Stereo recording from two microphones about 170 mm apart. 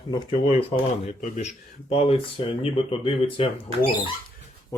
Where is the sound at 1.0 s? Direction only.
40° left (ahead or behind).